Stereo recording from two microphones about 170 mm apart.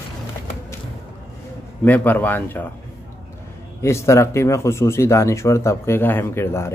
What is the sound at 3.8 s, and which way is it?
Speech, 15° left (ahead or behind).